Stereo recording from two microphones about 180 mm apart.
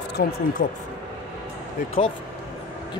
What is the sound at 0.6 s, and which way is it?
Speech, 50° left (ahead or behind).